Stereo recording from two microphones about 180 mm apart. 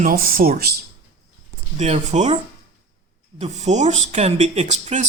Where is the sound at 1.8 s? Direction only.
35° right (ahead or behind).